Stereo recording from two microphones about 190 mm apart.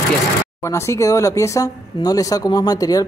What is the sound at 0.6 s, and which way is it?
Speech, 15° left (ahead or behind).